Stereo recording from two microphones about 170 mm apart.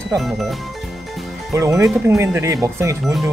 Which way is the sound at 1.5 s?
15° right (ahead or behind).